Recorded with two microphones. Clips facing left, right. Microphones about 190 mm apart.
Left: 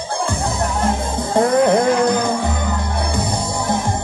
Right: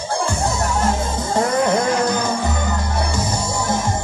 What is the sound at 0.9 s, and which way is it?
Music, 55° left (ahead or behind).